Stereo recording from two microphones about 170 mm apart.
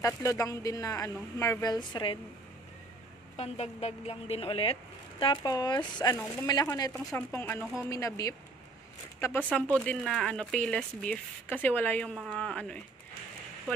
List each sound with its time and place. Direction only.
0.0 s speech: 20° left (ahead or behind)
3.3 s a woman's voice: 40° left (ahead or behind); by 6.7 s 20° left (ahead or behind)
6.9 s speech: centre (ahead or behind)
7.3 s a woman's voice: 15° left (ahead or behind)
9.5 s speech: 10° left (ahead or behind)